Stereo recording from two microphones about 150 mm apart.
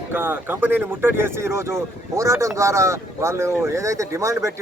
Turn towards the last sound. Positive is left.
turn(degrees=-20)  # may be behind; listen again after turning